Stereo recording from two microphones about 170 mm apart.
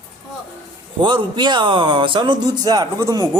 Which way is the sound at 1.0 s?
30° right (ahead or behind).